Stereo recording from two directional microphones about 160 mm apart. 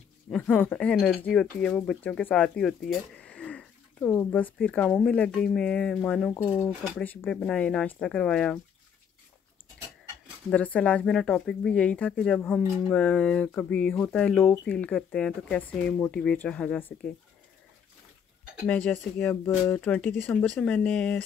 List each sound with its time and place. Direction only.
0.3 s speech: centre (ahead or behind)
6.3 s speech: 15° left (ahead or behind)
10.5 s speech: 10° left (ahead or behind)
18.7 s speech: 10° left (ahead or behind)